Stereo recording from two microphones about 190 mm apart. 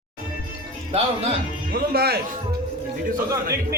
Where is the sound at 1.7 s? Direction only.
55° right (ahead or behind).